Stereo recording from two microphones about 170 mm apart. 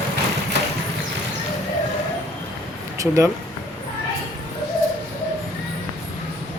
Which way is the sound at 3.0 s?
15° right (ahead or behind).